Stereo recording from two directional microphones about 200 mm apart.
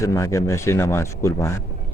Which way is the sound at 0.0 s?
15° left (ahead or behind).